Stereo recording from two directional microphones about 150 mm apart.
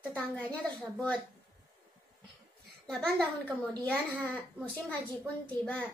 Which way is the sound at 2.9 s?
5° left (ahead or behind).